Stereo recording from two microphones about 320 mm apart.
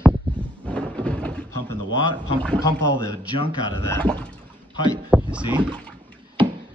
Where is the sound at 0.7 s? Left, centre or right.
Centre.